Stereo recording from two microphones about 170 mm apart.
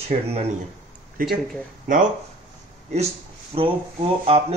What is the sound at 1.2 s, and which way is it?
Speech, 55° right (ahead or behind).